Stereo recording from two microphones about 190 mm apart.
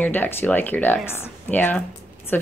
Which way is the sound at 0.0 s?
10° left (ahead or behind).